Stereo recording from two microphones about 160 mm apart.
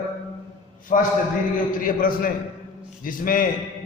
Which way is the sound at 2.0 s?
60° left (ahead or behind).